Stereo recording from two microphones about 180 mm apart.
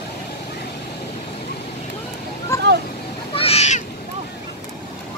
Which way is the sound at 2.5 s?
15° left (ahead or behind).